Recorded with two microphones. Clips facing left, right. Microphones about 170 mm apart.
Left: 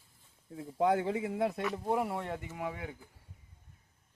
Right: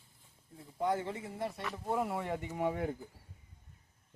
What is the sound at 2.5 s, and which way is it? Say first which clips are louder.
Speech: right 5 dB; 35° right (ahead or behind).